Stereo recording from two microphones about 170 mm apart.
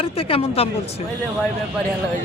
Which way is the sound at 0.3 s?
35° left (ahead or behind).